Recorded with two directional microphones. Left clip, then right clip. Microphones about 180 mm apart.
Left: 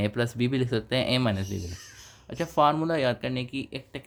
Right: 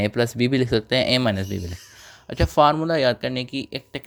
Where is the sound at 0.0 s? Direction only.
30° right (ahead or behind).